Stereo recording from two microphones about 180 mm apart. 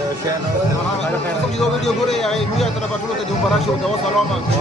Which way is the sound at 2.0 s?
Centre (ahead or behind).